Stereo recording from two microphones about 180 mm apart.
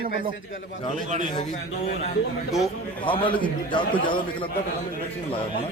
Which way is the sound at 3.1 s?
30° left (ahead or behind).